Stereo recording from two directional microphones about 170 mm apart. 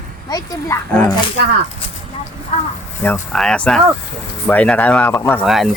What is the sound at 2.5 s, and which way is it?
Speech, 40° left (ahead or behind).